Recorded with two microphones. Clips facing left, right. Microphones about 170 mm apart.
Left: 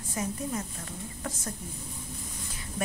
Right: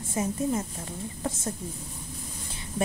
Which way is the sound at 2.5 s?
25° right (ahead or behind).